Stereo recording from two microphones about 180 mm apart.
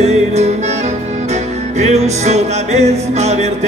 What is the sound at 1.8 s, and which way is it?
Music, 40° right (ahead or behind).